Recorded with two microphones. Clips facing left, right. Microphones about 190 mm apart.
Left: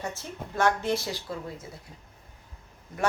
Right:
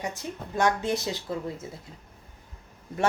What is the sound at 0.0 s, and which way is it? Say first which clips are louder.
Speech: right 2 dB; 15° right (ahead or behind).